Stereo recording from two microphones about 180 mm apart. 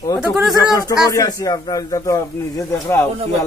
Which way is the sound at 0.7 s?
20° left (ahead or behind).